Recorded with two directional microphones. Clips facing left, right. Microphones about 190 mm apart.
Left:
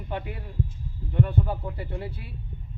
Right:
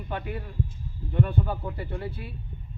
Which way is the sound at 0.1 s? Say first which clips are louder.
Even; 25° left (ahead or behind).